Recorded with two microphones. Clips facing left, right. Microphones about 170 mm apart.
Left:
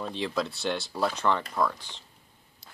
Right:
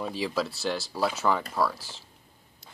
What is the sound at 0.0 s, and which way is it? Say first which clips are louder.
Speech: right 1 dB; 5° right (ahead or behind).